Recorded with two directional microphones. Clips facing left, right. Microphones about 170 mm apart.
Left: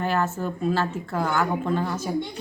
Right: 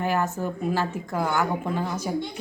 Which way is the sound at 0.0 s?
15° right (ahead or behind).